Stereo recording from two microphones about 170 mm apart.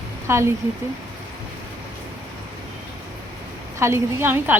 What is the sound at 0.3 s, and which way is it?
Speech, 15° right (ahead or behind).